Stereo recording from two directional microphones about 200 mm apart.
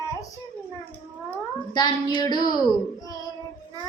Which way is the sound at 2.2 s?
20° left (ahead or behind).